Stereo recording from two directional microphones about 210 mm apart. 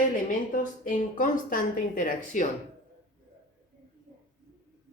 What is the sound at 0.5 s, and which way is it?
Speech, 40° left (ahead or behind).